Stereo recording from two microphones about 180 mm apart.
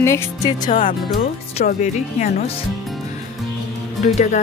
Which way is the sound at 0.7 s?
35° left (ahead or behind).